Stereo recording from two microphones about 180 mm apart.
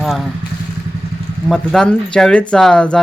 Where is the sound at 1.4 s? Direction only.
5° left (ahead or behind).